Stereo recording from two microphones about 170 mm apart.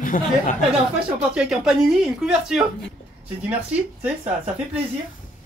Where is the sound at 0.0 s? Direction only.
50° left (ahead or behind).